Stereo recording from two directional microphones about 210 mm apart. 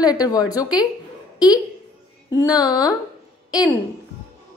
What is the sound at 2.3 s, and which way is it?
Speech, 15° left (ahead or behind).